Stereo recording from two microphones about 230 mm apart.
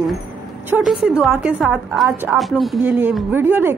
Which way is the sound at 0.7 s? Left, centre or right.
Centre.